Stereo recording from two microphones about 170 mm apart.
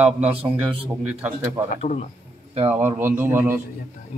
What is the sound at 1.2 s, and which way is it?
Speech, 15° right (ahead or behind).